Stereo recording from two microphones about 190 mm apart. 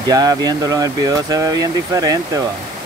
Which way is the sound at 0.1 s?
20° right (ahead or behind).